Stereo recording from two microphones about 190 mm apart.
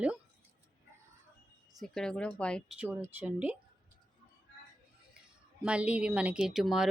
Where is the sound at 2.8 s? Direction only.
10° right (ahead or behind).